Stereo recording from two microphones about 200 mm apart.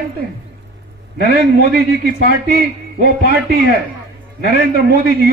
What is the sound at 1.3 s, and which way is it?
A man's voice, 50° right (ahead or behind).